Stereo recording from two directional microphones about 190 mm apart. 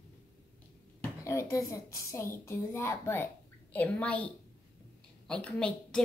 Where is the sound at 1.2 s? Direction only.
15° left (ahead or behind).